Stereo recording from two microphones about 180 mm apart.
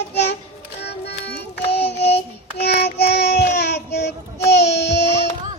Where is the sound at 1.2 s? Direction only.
35° left (ahead or behind).